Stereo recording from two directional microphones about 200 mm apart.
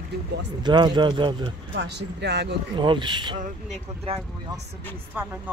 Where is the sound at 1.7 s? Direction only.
60° right (ahead or behind).